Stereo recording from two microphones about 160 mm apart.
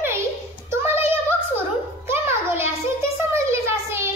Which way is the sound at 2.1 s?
15° right (ahead or behind).